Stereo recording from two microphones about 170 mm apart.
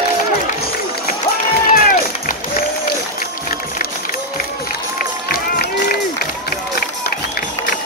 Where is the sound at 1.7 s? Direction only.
55° left (ahead or behind).